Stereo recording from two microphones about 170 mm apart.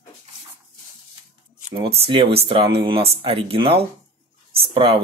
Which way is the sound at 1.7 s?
35° right (ahead or behind).